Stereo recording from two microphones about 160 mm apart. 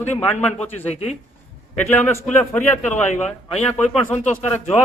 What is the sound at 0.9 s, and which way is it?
Speech, 40° left (ahead or behind).